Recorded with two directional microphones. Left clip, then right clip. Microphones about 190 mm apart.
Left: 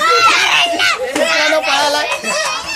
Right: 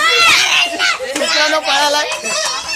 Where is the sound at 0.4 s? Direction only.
45° left (ahead or behind).